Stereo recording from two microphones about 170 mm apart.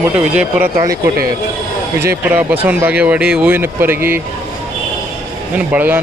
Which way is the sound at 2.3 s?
10° right (ahead or behind).